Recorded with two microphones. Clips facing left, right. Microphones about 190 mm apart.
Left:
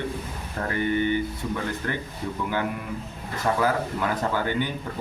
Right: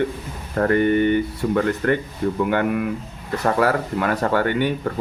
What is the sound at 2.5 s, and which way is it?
Speech, 75° right (ahead or behind).